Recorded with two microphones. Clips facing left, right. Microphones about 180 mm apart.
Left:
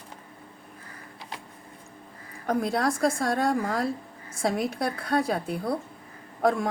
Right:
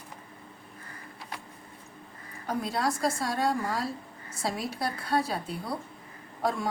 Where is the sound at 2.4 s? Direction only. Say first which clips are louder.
Left 4 dB; 60° left (ahead or behind).